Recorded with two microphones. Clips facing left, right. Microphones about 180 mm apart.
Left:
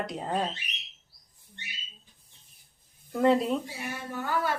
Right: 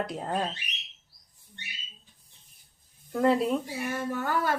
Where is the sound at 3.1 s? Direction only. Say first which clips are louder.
Even; centre (ahead or behind).